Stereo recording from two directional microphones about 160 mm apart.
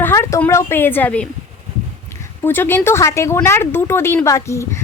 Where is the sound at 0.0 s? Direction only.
15° left (ahead or behind).